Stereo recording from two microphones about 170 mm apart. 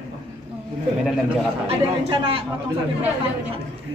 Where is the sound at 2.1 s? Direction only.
30° right (ahead or behind).